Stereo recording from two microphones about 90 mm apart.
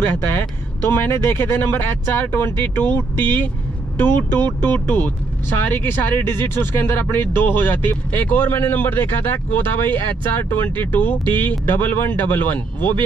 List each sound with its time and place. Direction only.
0.0 s speech: 25° left (ahead or behind)